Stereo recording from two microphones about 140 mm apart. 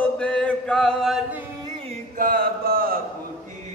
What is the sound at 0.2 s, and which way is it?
Chant, 5° left (ahead or behind).